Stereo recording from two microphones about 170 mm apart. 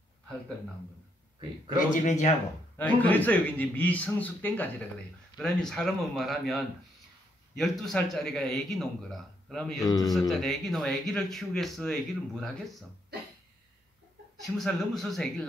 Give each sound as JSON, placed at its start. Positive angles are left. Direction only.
{"t": 1.8, "sound": "speech", "side_deg": 45}
{"t": 2.8, "sound": "a man's voice", "side_deg": 10}
{"t": 9.8, "sound": "a man's voice", "side_deg": 20}
{"t": 10.1, "sound": "speech", "side_deg": 0}
{"t": 14.4, "sound": "speech", "side_deg": 0}